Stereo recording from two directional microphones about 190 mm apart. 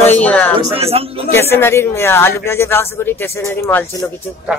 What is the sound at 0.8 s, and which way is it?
Speech, 30° right (ahead or behind).